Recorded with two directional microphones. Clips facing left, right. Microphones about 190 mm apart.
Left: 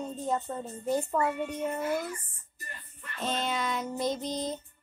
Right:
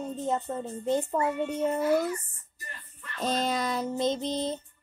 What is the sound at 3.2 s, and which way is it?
Music, 40° right (ahead or behind).